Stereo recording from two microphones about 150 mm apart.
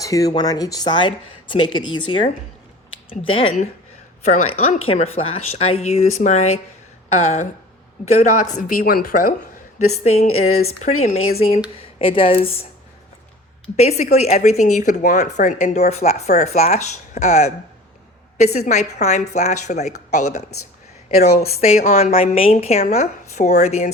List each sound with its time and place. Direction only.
0.0 s speech: 25° left (ahead or behind); by 3.7 s 40° left (ahead or behind)
4.3 s speech: 50° left (ahead or behind)
9.7 s speech: 50° left (ahead or behind)
13.7 s speech: 45° left (ahead or behind)
21.4 s speech: 45° left (ahead or behind)